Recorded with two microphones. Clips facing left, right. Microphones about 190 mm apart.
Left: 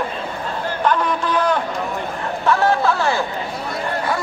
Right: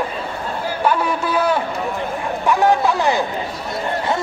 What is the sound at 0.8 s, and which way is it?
A man's voice, 10° right (ahead or behind).